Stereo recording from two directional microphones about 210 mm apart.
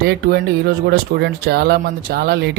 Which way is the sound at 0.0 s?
50° right (ahead or behind).